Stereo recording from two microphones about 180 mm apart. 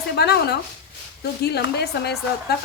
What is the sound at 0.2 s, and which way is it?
A woman's voice, 65° left (ahead or behind).